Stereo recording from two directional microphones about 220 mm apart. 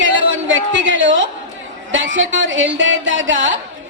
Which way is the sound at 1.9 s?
55° right (ahead or behind).